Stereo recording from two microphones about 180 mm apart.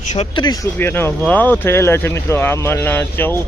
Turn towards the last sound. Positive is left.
turn(degrees=10)  # may be behind; listen again after turning